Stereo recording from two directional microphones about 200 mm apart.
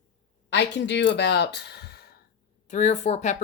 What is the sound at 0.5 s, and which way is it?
Speech, 60° left (ahead or behind).